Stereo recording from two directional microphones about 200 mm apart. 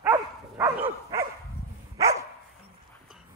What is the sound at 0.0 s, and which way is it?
Dog, 15° right (ahead or behind).